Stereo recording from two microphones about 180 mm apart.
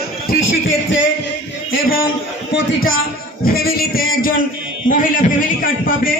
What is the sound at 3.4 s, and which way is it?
A man's voice, 55° left (ahead or behind).